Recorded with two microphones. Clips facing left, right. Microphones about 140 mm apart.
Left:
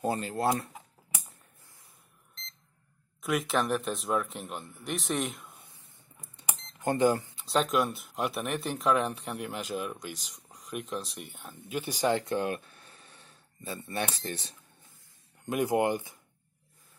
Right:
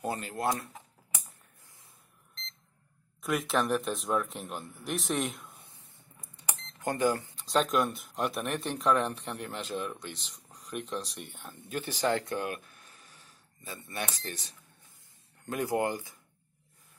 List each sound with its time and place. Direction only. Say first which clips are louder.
0.0 s speech: left 3 dB; 25° left (ahead or behind)
3.2 s speech: left 1 dB; centre (ahead or behind)
6.4 s cash register: left 3 dB; 20° left (ahead or behind)
7.3 s speech: even; 5° left (ahead or behind)
11.7 s speech: left 1 dB; 15° left (ahead or behind); by 14.5 s 35° left (ahead or behind)
15.4 s speech: left 3 dB; 20° left (ahead or behind)